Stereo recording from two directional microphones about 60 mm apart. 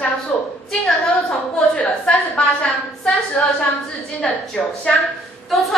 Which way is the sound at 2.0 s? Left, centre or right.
Centre.